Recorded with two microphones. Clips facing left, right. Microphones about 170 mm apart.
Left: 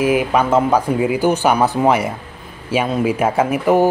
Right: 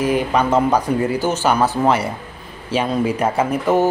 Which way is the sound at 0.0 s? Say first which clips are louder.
Left 2 dB; 5° left (ahead or behind).